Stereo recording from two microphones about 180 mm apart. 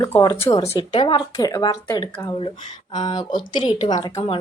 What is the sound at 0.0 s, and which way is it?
A woman's voice, 20° left (ahead or behind).